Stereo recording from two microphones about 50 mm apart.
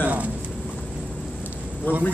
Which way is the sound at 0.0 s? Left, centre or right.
Right.